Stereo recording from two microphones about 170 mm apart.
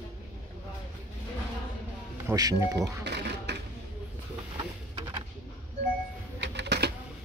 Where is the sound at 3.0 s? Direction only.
80° right.